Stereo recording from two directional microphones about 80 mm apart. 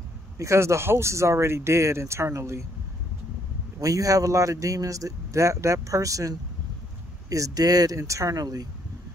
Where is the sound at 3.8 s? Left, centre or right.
Right.